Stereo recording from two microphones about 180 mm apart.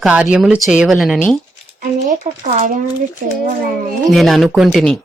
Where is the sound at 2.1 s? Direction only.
45° right (ahead or behind).